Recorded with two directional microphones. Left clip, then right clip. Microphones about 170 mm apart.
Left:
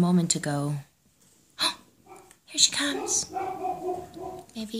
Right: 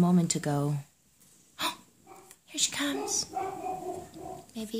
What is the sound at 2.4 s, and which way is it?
Speech, 15° right (ahead or behind).